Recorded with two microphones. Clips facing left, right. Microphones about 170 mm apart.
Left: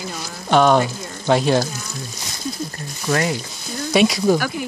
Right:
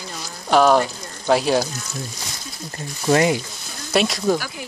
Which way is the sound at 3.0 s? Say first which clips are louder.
Right 4 dB; 20° right (ahead or behind).